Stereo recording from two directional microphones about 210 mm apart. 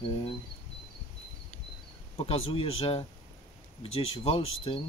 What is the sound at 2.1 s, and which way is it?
Speech, 30° left (ahead or behind).